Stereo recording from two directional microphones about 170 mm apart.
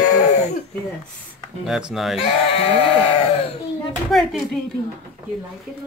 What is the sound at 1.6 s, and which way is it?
Speech, centre (ahead or behind).